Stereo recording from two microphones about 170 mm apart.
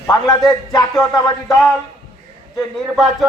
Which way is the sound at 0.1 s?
20° left (ahead or behind).